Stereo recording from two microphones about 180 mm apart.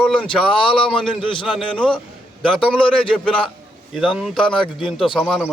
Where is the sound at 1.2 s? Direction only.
25° left (ahead or behind).